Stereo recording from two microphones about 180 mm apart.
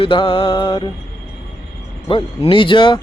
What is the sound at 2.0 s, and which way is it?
Music, 30° left (ahead or behind).